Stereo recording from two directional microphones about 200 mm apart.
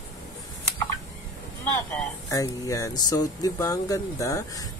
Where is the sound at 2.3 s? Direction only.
15° left (ahead or behind).